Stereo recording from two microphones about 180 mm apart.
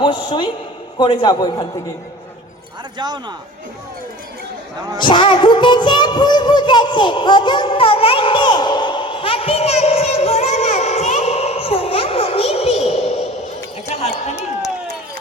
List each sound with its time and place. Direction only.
0.0 s a man's voice: 25° left (ahead or behind)
3.0 s a man's voice: 25° right (ahead or behind)
4.9 s speech: 25° left (ahead or behind)